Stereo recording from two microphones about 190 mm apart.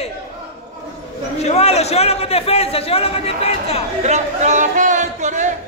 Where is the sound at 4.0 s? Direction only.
35° right (ahead or behind).